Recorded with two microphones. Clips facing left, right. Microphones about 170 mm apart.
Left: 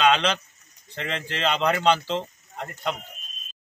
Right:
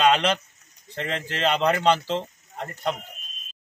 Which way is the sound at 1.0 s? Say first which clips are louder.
Right 2 dB; centre (ahead or behind).